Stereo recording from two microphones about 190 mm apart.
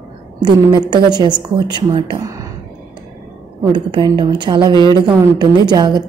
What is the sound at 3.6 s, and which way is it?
A woman's voice, 25° right (ahead or behind).